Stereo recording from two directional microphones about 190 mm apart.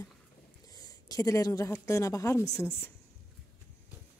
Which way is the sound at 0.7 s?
20° left (ahead or behind).